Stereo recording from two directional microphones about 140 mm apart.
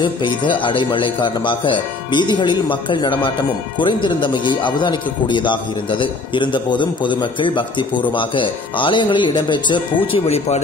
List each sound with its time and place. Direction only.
0.0 s speech: 35° left (ahead or behind)